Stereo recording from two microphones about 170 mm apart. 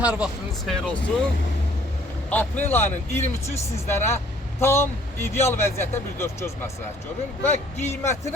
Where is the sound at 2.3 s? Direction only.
10° left (ahead or behind).